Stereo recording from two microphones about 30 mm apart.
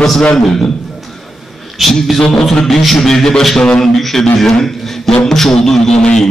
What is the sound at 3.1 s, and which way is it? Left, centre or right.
Speech, centre.